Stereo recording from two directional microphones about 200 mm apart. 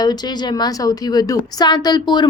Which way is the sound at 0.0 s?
20° left (ahead or behind).